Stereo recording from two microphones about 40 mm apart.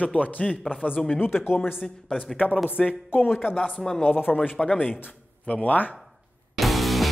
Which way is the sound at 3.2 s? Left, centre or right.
Left.